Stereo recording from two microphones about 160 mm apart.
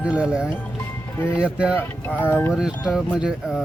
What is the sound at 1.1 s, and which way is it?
Speech, 15° left (ahead or behind).